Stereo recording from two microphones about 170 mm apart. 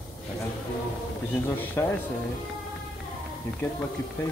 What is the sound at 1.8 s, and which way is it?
Speech, 10° left (ahead or behind).